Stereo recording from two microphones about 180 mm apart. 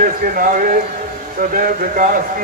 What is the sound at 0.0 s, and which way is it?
Speech, 50° right (ahead or behind).